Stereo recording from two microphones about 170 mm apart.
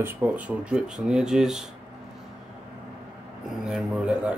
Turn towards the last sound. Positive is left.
turn(degrees=-5)  # may be behind; listen again after turning